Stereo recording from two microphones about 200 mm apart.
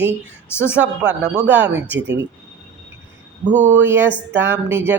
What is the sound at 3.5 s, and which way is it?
Speech, 40° right (ahead or behind).